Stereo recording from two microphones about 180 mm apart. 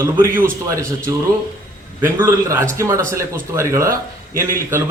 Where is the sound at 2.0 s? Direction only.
10° right (ahead or behind).